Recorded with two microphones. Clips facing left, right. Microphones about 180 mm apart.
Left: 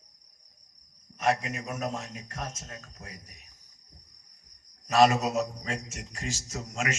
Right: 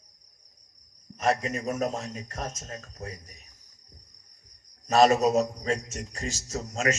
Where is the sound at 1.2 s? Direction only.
40° right (ahead or behind).